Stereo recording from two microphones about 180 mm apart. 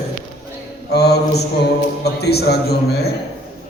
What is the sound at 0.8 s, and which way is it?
Speech, 65° left (ahead or behind).